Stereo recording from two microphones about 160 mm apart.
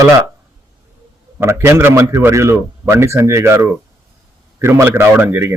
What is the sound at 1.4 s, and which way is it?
A man's voice, 15° right (ahead or behind).